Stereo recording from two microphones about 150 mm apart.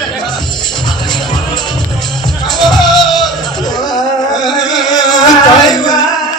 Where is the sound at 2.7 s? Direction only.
Centre (ahead or behind).